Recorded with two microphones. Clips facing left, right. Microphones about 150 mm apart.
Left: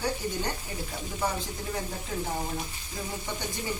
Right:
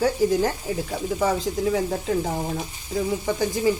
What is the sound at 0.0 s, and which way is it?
Speech, 90° right.